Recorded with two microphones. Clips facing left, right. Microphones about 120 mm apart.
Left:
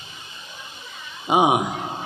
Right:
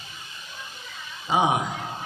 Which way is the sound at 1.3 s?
15° left (ahead or behind).